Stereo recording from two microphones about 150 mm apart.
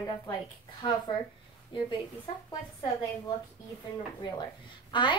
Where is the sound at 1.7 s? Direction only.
30° left (ahead or behind).